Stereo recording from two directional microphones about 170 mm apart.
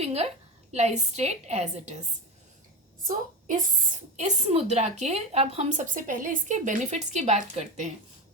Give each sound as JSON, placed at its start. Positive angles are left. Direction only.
{"t": 0.0, "sound": "a woman's voice", "side_deg": -40}
{"t": 3.0, "sound": "a woman's voice", "side_deg": -50}